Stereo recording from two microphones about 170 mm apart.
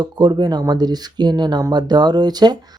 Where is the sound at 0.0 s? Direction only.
25° right (ahead or behind).